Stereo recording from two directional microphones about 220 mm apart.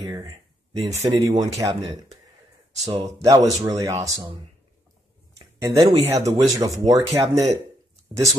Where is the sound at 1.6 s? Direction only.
20° right (ahead or behind).